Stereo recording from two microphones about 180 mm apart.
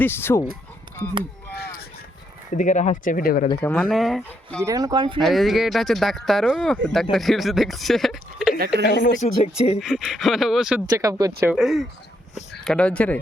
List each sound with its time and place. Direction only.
0.0 s speech: 10° left (ahead or behind)
2.5 s speech: 45° left (ahead or behind)
3.6 s speech: 10° left (ahead or behind)
4.6 s speech: 20° right (ahead or behind)
5.2 s speech: centre (ahead or behind)
8.5 s speech: 60° right (ahead or behind)
8.8 s speech: 50° left (ahead or behind)
9.4 s speech: 35° left (ahead or behind)
9.8 s speech: 5° right (ahead or behind)
10.8 s speech: 20° right (ahead or behind)
11.5 s speech: centre (ahead or behind)